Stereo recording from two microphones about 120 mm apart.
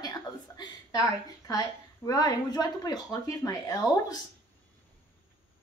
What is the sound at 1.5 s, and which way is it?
A woman's voice, 30° left (ahead or behind).